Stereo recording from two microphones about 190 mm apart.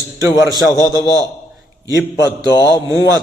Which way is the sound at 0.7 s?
15° left (ahead or behind).